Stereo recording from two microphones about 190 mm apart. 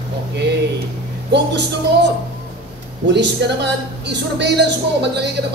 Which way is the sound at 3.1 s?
65° right (ahead or behind).